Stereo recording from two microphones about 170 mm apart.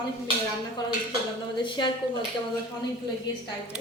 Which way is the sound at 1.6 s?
30° left (ahead or behind).